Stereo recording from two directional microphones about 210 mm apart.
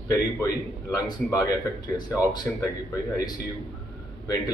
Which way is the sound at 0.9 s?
15° left (ahead or behind).